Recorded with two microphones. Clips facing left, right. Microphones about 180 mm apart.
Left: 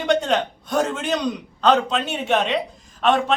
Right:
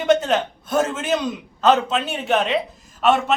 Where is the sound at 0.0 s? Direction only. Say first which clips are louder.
Right 2 dB; 5° right (ahead or behind).